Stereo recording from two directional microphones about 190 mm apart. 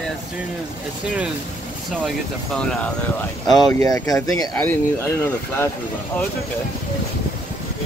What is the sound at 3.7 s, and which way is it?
Speech, 20° left (ahead or behind).